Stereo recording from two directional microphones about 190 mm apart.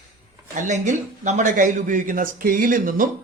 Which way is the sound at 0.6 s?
40° right (ahead or behind).